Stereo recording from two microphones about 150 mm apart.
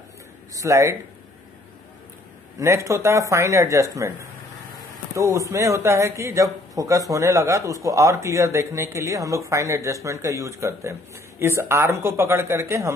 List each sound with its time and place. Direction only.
0.6 s a man's voice: 20° right (ahead or behind)
2.6 s a man's voice: 20° right (ahead or behind)
5.1 s a man's voice: 20° right (ahead or behind)